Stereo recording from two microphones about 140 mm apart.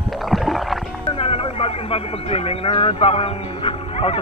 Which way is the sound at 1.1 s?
40° left (ahead or behind).